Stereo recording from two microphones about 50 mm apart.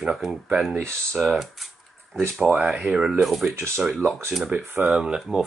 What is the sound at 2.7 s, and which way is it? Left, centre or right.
Speech, centre.